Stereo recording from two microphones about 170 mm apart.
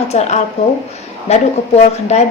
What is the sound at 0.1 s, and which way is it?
A woman's voice, 40° left (ahead or behind).